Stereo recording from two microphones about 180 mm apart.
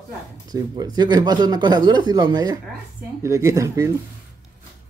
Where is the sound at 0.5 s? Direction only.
20° right (ahead or behind).